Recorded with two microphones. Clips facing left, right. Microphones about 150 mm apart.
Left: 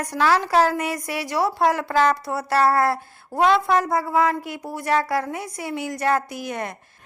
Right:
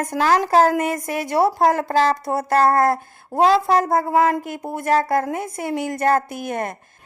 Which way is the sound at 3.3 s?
35° right (ahead or behind).